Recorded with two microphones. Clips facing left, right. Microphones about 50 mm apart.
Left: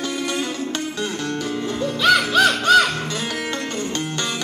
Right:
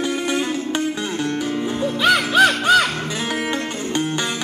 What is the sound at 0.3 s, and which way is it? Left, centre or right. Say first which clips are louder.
Music: right 3 dB; centre.